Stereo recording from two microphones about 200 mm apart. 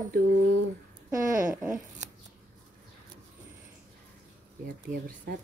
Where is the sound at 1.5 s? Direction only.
10° right (ahead or behind).